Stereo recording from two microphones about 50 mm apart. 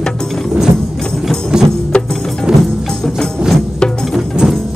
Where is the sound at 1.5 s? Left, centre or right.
Centre.